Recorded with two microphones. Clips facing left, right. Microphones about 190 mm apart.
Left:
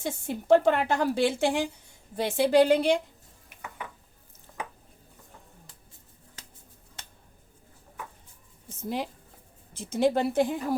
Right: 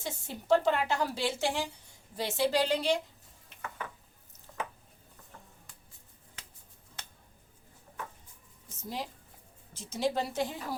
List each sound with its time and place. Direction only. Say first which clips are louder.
0.0 s a woman's voice: left 7 dB; 55° left (ahead or behind)
8.8 s a woman's voice: left 7 dB; 60° left (ahead or behind)